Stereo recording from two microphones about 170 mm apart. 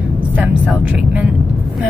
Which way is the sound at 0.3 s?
10° right (ahead or behind).